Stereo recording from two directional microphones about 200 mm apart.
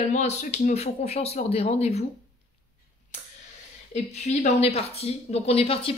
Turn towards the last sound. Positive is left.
turn(degrees=30)  # may be behind; listen again after turning